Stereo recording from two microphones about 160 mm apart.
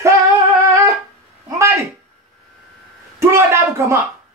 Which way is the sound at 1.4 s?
20° right (ahead or behind).